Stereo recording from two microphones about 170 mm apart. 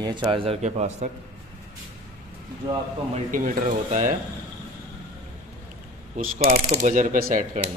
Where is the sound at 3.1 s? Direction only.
50° right (ahead or behind).